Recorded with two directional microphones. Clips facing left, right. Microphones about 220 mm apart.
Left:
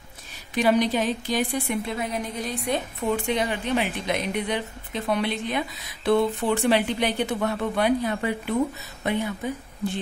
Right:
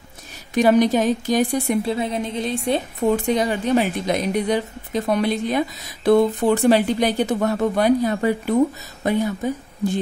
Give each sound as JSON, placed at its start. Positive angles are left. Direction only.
{"t": 0.6, "sound": "speech", "side_deg": -45}